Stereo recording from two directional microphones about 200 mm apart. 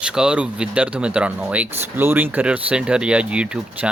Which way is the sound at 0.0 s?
5° right (ahead or behind).